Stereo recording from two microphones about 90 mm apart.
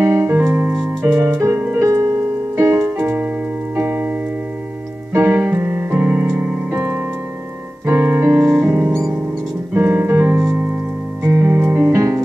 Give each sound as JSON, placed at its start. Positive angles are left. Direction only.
{"t": 0.0, "sound": "keyboard", "side_deg": -25}
{"t": 1.8, "sound": "music", "side_deg": -35}
{"t": 2.5, "sound": "music", "side_deg": -25}
{"t": 3.7, "sound": "keyboard", "side_deg": -25}
{"t": 5.1, "sound": "piano", "side_deg": -30}
{"t": 7.8, "sound": "music", "side_deg": -25}
{"t": 9.8, "sound": "piano", "side_deg": -25}
{"t": 11.2, "sound": "music", "side_deg": -35}